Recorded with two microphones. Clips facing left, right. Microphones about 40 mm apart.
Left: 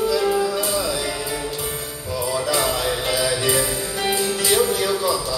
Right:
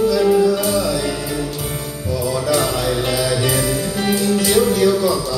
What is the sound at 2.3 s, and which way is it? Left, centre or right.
Music, left.